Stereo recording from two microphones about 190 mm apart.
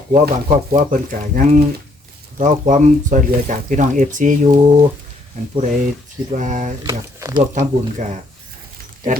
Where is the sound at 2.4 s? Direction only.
40° right (ahead or behind).